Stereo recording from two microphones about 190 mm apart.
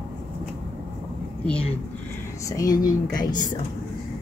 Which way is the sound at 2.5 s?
20° left (ahead or behind).